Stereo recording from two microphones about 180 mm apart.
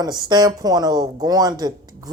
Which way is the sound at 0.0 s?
20° right (ahead or behind).